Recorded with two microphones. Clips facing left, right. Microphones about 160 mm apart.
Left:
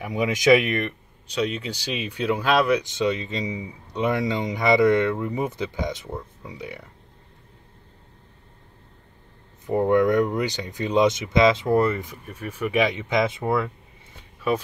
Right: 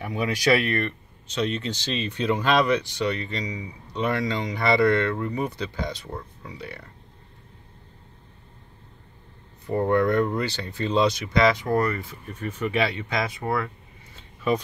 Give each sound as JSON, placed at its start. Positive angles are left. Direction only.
{"t": 0.0, "sound": "speech", "side_deg": 15}
{"t": 2.8, "sound": "speech", "side_deg": 20}
{"t": 9.7, "sound": "speech", "side_deg": 15}
{"t": 14.5, "sound": "speech", "side_deg": 5}